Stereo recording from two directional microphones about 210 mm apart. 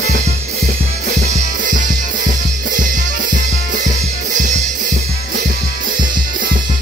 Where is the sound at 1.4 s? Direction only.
40° right (ahead or behind).